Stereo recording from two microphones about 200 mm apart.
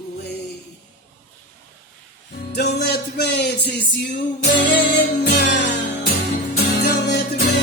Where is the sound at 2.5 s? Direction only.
55° left (ahead or behind).